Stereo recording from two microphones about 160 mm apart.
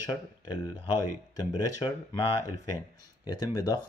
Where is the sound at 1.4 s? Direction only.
25° left (ahead or behind).